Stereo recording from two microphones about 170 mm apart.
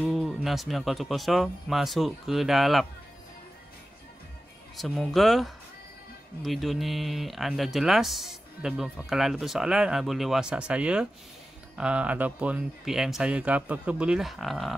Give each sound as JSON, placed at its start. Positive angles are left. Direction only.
{"t": 0.0, "sound": "speech", "side_deg": 0}
{"t": 4.7, "sound": "speech", "side_deg": 0}